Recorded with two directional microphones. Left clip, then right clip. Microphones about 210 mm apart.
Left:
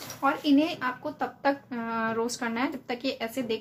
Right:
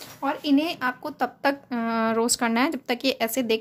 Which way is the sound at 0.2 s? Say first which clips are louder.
Even; 45° right (ahead or behind).